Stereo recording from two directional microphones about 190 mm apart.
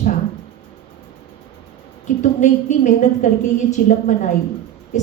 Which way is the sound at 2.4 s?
40° left (ahead or behind).